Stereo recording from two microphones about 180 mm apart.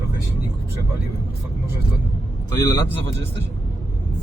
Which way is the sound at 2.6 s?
20° left (ahead or behind).